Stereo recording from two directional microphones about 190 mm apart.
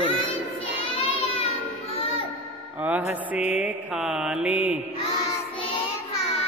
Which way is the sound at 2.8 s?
10° right (ahead or behind).